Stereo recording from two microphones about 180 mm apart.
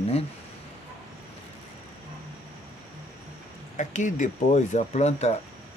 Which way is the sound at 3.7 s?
45° left (ahead or behind).